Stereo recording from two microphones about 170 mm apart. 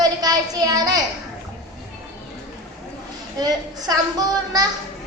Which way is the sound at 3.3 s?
25° right (ahead or behind).